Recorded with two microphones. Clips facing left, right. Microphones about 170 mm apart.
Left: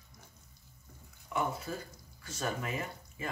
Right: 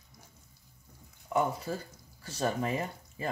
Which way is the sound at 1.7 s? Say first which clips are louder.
Right 4 dB; 30° right (ahead or behind).